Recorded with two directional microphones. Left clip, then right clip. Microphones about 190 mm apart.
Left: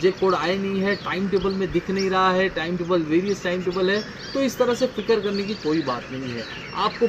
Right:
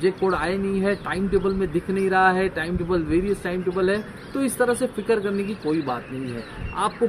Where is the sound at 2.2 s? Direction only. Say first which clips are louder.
Even; 20° right (ahead or behind).